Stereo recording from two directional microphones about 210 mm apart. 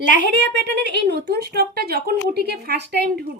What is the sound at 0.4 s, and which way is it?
A woman's voice, 55° right (ahead or behind).